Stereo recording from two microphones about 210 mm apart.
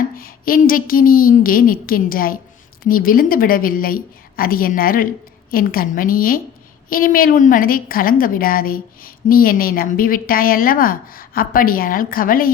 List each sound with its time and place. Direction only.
0.2 s a woman's voice: 45° left (ahead or behind)